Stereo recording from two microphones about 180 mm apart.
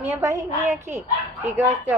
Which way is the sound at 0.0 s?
15° right (ahead or behind).